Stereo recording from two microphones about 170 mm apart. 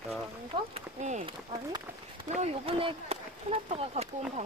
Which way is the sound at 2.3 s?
35° right (ahead or behind).